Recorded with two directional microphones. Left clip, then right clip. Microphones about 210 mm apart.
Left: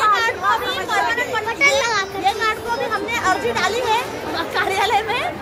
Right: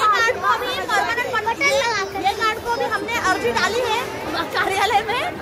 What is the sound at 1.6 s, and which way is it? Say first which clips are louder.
Children playing: left 5 dB; 25° left (ahead or behind).